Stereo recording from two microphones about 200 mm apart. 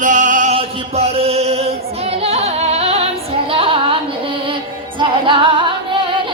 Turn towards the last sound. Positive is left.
turn(degrees=-25)  # may be behind; listen again after turning